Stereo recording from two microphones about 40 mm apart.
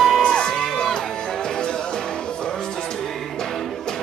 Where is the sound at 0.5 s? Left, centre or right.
Centre.